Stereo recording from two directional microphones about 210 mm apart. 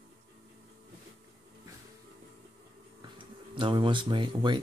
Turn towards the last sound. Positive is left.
turn(degrees=-20)  # may be behind; listen again after turning